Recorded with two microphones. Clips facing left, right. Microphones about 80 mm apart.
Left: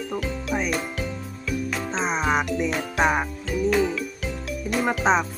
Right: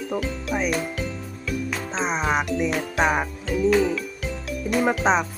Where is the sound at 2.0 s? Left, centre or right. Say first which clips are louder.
Even; centre.